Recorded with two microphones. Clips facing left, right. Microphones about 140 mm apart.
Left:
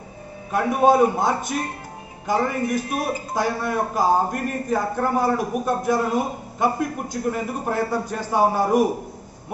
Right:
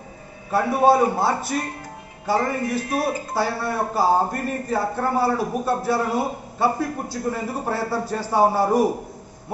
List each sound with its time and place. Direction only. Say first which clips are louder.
0.5 s a man's voice: even; 15° left (ahead or behind)